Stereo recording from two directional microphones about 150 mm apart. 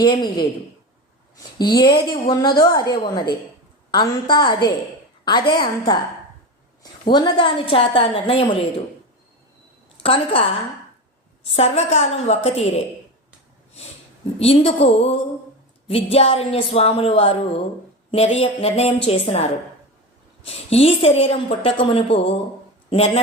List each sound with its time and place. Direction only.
0.0 s a woman's voice: 30° left (ahead or behind)
1.7 s a woman's voice: 30° left (ahead or behind)
7.1 s a woman's voice: 30° left (ahead or behind)
10.0 s a woman's voice: 40° left (ahead or behind)
11.5 s a woman's voice: 45° left (ahead or behind)
14.3 s a woman's voice: 40° left (ahead or behind)